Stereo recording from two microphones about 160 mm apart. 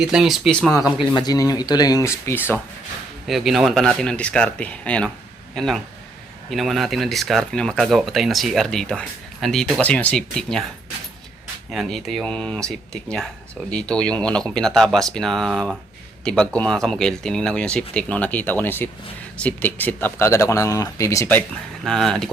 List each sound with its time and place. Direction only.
0.0 s speech: 5° right (ahead or behind)
1.1 s speech: 25° left (ahead or behind)
3.2 s speech: centre (ahead or behind)
11.7 s speech: centre (ahead or behind); by 21.4 s 15° left (ahead or behind)
21.8 s speech: 5° left (ahead or behind)